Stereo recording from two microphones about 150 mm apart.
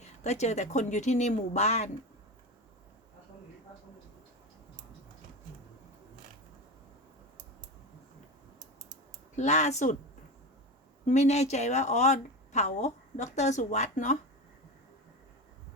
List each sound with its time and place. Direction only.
0.2 s a woman's voice: 50° left (ahead or behind)
9.3 s a woman's voice: 50° left (ahead or behind)
11.0 s a woman's voice: 50° left (ahead or behind)